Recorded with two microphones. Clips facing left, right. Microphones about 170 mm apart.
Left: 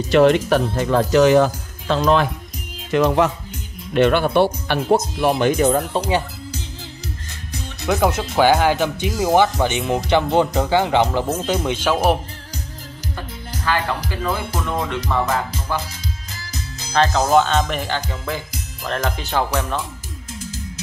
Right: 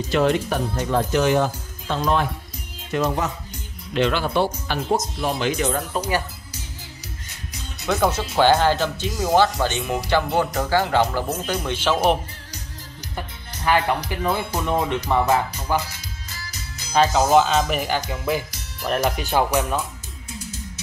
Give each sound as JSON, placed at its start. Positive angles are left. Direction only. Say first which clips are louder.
{"t": 0.1, "sound": "speech", "louder": "left 7 dB", "side_deg": 75}
{"t": 3.9, "sound": "speech", "louder": "left 5 dB", "side_deg": 55}
{"t": 5.9, "sound": "speech", "louder": "left 3 dB", "side_deg": 30}
{"t": 7.9, "sound": "speech", "louder": "left 2 dB", "side_deg": 15}
{"t": 13.7, "sound": "speech", "louder": "right 2 dB", "side_deg": -20}
{"t": 16.9, "sound": "speech", "louder": "even", "side_deg": -5}